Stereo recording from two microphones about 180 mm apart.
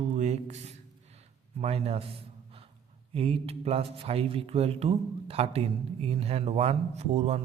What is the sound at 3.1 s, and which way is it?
A man's voice, 30° right (ahead or behind).